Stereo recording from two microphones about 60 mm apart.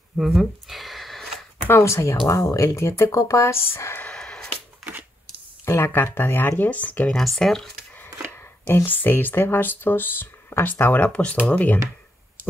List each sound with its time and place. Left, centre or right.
0.2 s a sound: centre
1.7 s speech: left
3.2 s speech: left
3.5 s speech: left
4.0 s a sound: centre
5.9 s speech: left
7.2 s speech: centre
8.6 s speech: left
8.9 s speech: left
11.1 s speech: centre